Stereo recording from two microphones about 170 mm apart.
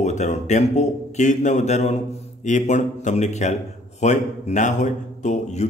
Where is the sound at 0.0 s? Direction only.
40° left (ahead or behind).